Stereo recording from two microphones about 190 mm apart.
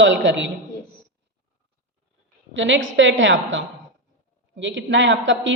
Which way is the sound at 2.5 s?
75° right (ahead or behind).